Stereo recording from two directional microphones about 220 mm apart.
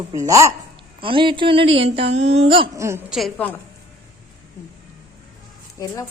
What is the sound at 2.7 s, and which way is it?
Speech, 15° right (ahead or behind).